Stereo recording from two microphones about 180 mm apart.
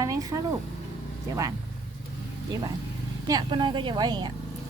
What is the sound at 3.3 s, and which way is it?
Speech, 25° right (ahead or behind).